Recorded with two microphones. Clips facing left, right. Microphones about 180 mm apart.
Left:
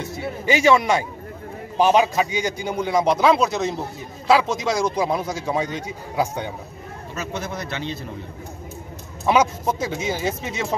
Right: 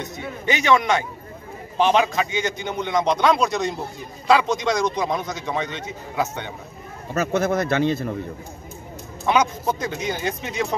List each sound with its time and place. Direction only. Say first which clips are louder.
0.5 s a man's voice: left 2 dB; 10° left (ahead or behind)
7.2 s speech: right 9 dB; 50° right (ahead or behind)
9.2 s a man's voice: left 2 dB; 5° left (ahead or behind)